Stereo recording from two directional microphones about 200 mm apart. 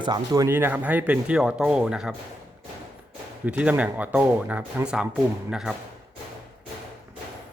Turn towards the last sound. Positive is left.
turn(degrees=0)  # may be behind; listen again after turning